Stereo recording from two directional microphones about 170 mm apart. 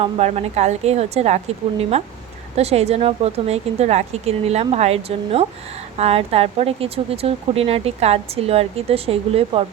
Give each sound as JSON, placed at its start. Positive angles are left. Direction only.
{"t": 0.0, "sound": "speech", "side_deg": -40}